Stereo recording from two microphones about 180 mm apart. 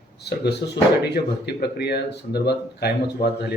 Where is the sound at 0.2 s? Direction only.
65° left (ahead or behind).